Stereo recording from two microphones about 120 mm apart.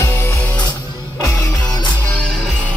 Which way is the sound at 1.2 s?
25° left (ahead or behind).